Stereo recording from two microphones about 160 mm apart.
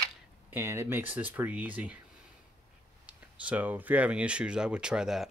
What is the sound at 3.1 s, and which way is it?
Speech, 10° right (ahead or behind).